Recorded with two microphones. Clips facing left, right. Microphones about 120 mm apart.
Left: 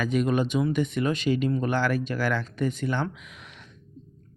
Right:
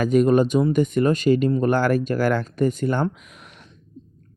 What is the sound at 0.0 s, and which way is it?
A man's voice, 45° right (ahead or behind).